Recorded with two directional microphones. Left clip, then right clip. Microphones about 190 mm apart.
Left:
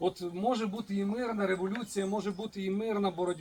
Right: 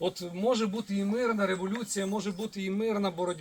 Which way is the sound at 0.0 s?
10° left (ahead or behind).